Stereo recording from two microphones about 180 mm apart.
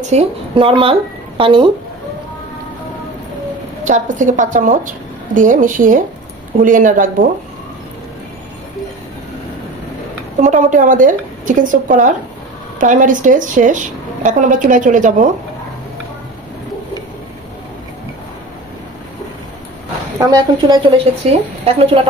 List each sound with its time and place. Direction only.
0.0 s a woman's voice: 35° right (ahead or behind)
3.8 s a woman's voice: 45° right (ahead or behind)
10.4 s a woman's voice: 45° right (ahead or behind)
20.2 s a woman's voice: 20° right (ahead or behind)